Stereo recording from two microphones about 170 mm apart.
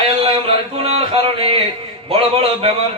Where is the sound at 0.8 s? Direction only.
35° right (ahead or behind).